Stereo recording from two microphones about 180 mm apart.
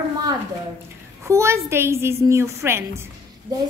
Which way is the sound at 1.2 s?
15° right (ahead or behind).